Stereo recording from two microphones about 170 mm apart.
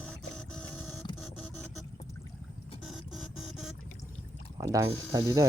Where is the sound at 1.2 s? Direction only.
5° left (ahead or behind).